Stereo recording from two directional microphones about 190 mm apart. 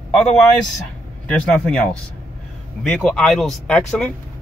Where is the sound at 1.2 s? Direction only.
5° left (ahead or behind).